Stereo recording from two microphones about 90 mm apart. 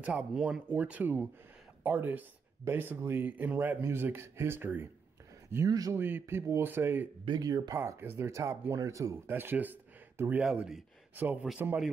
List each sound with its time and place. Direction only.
0.0 s speech: 15° right (ahead or behind)
5.7 s speech: 45° right (ahead or behind)
5.9 s speech: 25° right (ahead or behind)
7.2 s speech: 45° right (ahead or behind)
7.7 s speech: 30° right (ahead or behind)
9.1 s speech: 20° right (ahead or behind)
10.4 s speech: 5° right (ahead or behind)